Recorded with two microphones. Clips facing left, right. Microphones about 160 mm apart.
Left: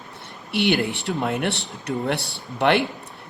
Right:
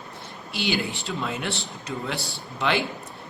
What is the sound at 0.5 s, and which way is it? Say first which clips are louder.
Speech: left 6 dB; 65° left (ahead or behind).